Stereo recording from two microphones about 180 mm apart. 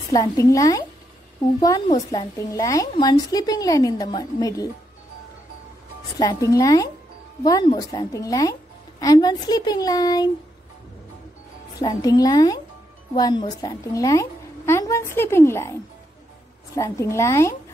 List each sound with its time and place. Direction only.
0.1 s a woman's voice: 20° left (ahead or behind)
6.1 s a woman's voice: 20° left (ahead or behind)
11.8 s a woman's voice: 20° left (ahead or behind)
16.7 s a woman's voice: 15° left (ahead or behind)